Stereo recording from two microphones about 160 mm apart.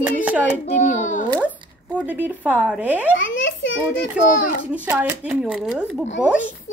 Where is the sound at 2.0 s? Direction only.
10° right (ahead or behind).